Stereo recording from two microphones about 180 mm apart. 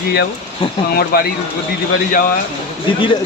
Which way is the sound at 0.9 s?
60° left (ahead or behind).